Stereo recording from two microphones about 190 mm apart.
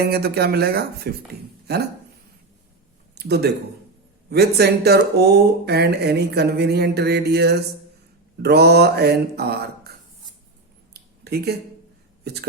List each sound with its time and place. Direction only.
0.0 s speech: 55° right (ahead or behind)
3.2 s speech: 60° right (ahead or behind)
10.9 s a sound: 55° right (ahead or behind)